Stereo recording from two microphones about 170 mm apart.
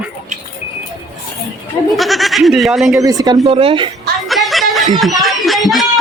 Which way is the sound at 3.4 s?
35° right (ahead or behind).